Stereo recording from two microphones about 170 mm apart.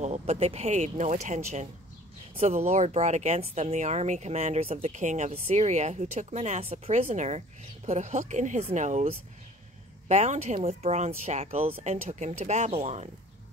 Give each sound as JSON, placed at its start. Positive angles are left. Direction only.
{"t": 0.0, "sound": "speech", "side_deg": -40}